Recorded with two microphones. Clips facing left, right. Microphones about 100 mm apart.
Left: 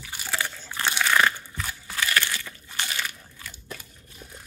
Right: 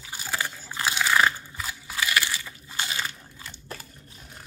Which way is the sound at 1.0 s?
10° right (ahead or behind).